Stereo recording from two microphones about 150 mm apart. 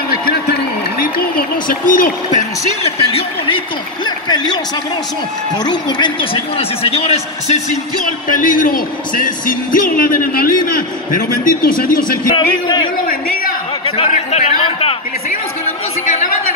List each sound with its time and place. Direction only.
0.2 s a sound: 90° left
1.7 s speech: 65° left (ahead or behind)
3.1 s a man's voice: 35° left (ahead or behind)
5.6 s a man's voice: 30° left (ahead or behind); by 7.8 s 45° left (ahead or behind)
8.3 s a man's voice: 65° left (ahead or behind)
12.3 s a man's voice: 30° left (ahead or behind)
13.1 s a sound: 70° left (ahead or behind)
13.8 s a man's voice: 45° left (ahead or behind)
16.1 s chatter: 55° left (ahead or behind)